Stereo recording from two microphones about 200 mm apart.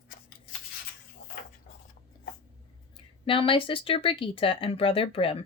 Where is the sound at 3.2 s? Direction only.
25° left (ahead or behind).